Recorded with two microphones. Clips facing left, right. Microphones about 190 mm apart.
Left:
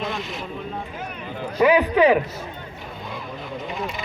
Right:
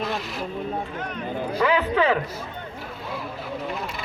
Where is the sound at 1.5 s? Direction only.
15° left (ahead or behind).